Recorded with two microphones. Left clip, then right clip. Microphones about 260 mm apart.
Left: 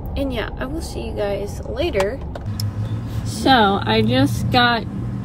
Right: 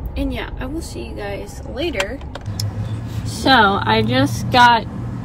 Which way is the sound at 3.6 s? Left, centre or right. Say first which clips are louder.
Right 2 dB; centre.